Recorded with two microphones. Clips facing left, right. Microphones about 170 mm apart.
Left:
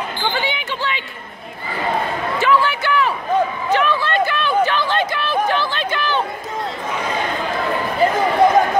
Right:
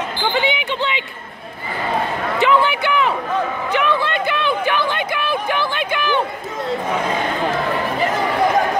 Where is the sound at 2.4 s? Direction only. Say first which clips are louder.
Right 2 dB; 20° right (ahead or behind).